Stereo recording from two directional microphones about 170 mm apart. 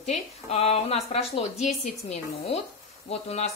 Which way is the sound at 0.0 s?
40° left (ahead or behind).